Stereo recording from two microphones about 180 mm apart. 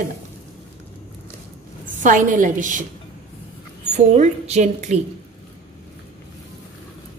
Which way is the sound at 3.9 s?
40° right (ahead or behind).